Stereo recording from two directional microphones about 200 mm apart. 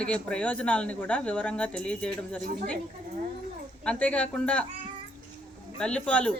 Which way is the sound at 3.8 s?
5° left (ahead or behind).